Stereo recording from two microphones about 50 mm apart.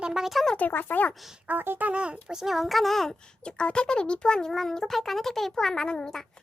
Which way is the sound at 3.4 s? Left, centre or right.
Left.